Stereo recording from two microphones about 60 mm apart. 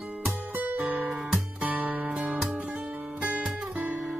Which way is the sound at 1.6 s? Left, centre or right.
Right.